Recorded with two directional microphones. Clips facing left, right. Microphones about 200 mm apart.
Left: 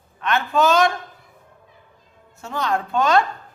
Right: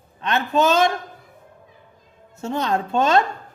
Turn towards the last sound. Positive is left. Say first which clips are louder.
# even
turn(degrees=-25)  # may be behind; listen again after turning